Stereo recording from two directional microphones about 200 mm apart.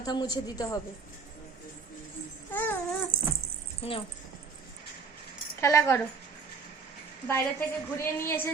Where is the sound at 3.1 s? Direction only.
50° right (ahead or behind).